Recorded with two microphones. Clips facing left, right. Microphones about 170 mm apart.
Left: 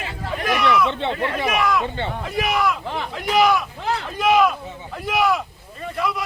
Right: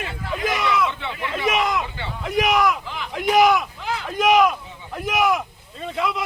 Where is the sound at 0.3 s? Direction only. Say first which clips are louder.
Left 3 dB; 20° right (ahead or behind).